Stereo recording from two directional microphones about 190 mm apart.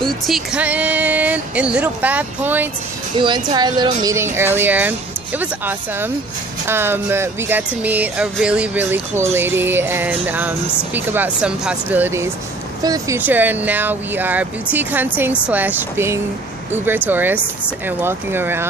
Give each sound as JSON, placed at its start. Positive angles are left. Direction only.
{"t": 0.0, "sound": "music", "side_deg": 0}
{"t": 3.2, "sound": "music", "side_deg": -25}